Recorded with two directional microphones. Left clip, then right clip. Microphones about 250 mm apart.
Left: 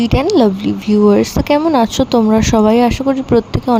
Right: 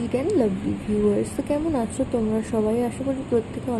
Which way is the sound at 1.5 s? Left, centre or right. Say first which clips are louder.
Left 15 dB; left.